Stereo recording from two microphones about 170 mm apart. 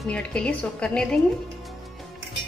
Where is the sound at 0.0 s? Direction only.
5° left (ahead or behind).